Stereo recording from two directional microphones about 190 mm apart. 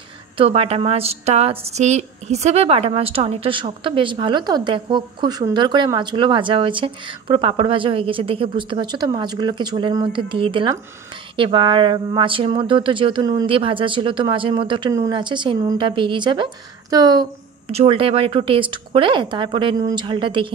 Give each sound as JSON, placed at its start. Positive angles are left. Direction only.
{"t": 0.4, "sound": "speech", "side_deg": -30}
{"t": 17.6, "sound": "speech", "side_deg": -30}